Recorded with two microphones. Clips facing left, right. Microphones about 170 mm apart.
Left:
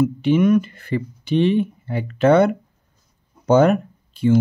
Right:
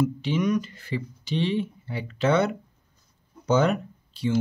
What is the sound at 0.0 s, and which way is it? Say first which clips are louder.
Speech: left 8 dB; 55° left (ahead or behind).